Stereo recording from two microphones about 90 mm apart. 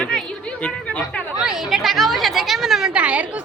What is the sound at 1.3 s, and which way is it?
A woman's voice, 5° right (ahead or behind).